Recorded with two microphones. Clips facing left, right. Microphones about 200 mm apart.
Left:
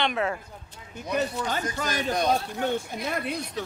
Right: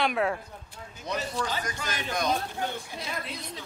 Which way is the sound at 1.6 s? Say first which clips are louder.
Left 5 dB; 40° left (ahead or behind).